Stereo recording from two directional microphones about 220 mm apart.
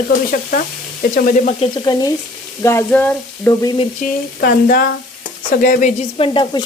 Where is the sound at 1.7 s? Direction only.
20° left (ahead or behind).